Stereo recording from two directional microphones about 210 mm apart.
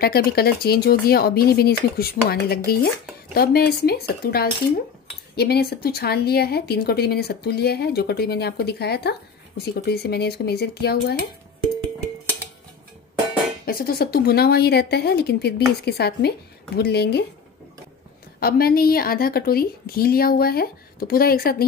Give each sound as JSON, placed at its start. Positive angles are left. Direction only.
{"t": 0.0, "sound": "speech", "side_deg": 45}
{"t": 13.7, "sound": "speech", "side_deg": 45}
{"t": 18.4, "sound": "speech", "side_deg": 45}